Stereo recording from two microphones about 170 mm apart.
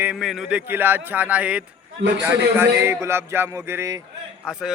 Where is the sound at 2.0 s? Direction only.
90° right.